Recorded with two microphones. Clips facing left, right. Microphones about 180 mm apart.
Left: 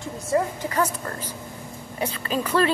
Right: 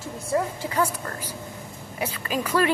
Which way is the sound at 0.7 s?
10° right (ahead or behind).